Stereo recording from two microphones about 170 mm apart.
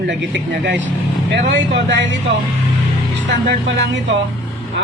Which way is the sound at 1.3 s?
90° right.